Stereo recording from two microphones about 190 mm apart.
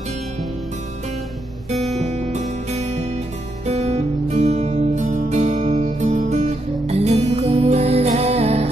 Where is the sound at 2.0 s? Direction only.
35° right (ahead or behind).